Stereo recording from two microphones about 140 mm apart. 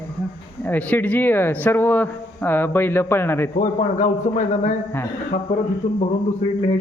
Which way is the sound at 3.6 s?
65° left (ahead or behind).